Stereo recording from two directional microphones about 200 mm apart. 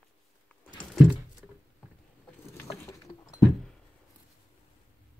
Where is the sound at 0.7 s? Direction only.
Centre (ahead or behind).